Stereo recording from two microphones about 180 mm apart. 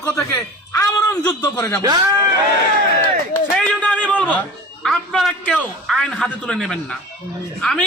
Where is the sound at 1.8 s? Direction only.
20° right (ahead or behind).